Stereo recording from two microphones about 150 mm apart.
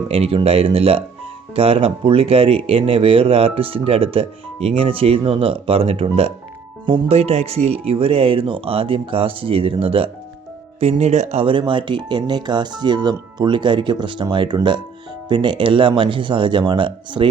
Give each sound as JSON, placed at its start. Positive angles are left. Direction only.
{"t": 0.1, "sound": "speech", "side_deg": -40}